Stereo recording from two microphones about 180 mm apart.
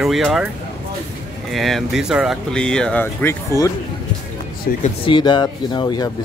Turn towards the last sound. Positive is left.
turn(degrees=25)  # may be behind; listen again after turning